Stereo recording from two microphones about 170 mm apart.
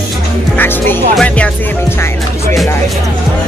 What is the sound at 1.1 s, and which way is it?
Speech, 5° left (ahead or behind).